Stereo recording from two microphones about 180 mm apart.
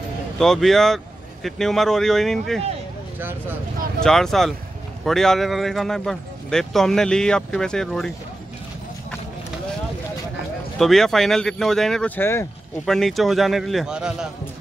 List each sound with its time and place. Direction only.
0.4 s a man's voice: centre (ahead or behind)
3.2 s speech: 10° right (ahead or behind)
4.0 s a man's voice: 5° left (ahead or behind)
10.8 s a man's voice: centre (ahead or behind)
12.8 s a man's voice: centre (ahead or behind)